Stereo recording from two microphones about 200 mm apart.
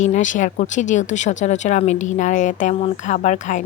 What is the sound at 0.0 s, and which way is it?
Speech, 35° left (ahead or behind).